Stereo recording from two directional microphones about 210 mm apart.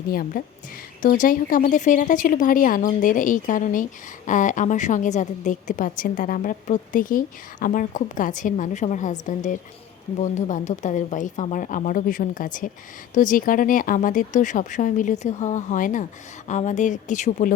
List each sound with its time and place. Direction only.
0.1 s a woman's voice: 45° left (ahead or behind)